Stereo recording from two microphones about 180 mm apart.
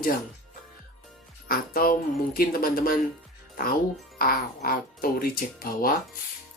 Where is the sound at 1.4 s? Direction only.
55° left (ahead or behind).